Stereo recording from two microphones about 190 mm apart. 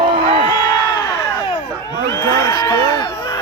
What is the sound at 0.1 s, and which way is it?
Crowd, 35° right (ahead or behind).